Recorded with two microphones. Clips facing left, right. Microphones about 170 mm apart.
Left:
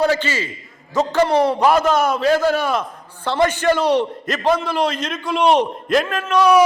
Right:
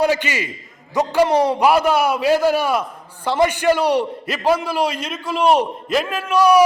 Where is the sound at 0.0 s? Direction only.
15° right (ahead or behind).